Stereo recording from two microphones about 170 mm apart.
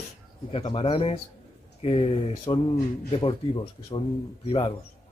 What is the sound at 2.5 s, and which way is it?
Speech, 25° left (ahead or behind).